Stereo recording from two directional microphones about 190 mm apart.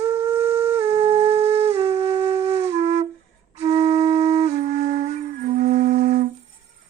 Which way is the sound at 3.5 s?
35° right (ahead or behind).